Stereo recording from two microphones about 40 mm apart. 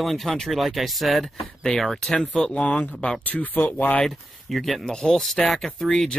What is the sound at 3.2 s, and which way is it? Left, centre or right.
Speech, left.